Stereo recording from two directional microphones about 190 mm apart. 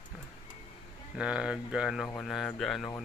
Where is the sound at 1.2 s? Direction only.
5° right (ahead or behind).